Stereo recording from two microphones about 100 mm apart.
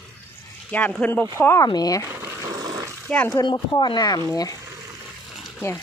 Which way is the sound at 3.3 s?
40° left (ahead or behind).